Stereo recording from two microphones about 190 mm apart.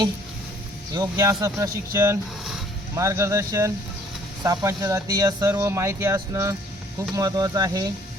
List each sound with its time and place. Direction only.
0.9 s speech: 20° right (ahead or behind)